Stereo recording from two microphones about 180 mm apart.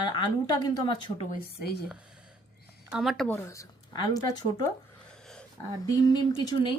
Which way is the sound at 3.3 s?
15° left (ahead or behind).